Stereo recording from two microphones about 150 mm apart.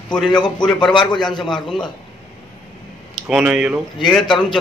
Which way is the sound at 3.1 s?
5° right (ahead or behind).